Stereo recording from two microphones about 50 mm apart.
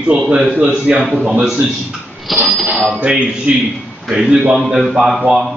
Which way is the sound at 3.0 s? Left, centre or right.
Right.